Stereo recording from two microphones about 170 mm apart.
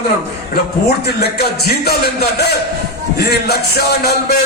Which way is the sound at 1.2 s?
65° left (ahead or behind).